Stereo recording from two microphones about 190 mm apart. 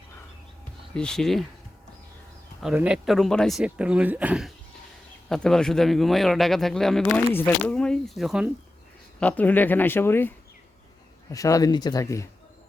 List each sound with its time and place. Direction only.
0.9 s speech: 5° left (ahead or behind)
2.6 s speech: 5° right (ahead or behind)
9.2 s speech: 10° left (ahead or behind)